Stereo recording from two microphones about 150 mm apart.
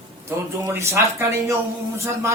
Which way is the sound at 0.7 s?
15° right (ahead or behind).